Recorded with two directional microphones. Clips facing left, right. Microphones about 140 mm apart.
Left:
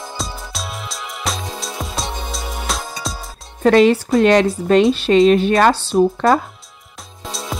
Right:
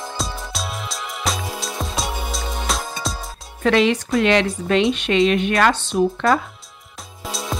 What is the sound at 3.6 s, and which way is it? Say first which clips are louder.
Speech: left 5 dB; 40° left (ahead or behind).